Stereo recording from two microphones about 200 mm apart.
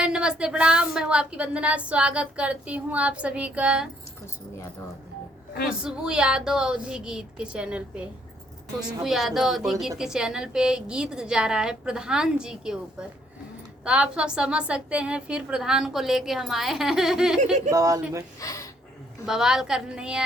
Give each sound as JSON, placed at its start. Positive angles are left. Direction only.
{"t": 0.0, "sound": "a woman's voice", "side_deg": -5}
{"t": 5.6, "sound": "a woman's voice", "side_deg": -5}
{"t": 9.0, "sound": "a woman's voice", "side_deg": 0}
{"t": 17.7, "sound": "speech", "side_deg": -15}
{"t": 18.3, "sound": "a sound", "side_deg": 15}
{"t": 19.2, "sound": "a woman's voice", "side_deg": -5}